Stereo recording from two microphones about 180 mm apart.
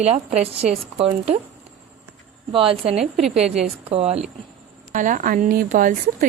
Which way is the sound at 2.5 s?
30° right (ahead or behind).